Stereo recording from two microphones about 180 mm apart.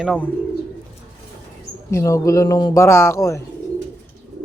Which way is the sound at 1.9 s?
15° left (ahead or behind).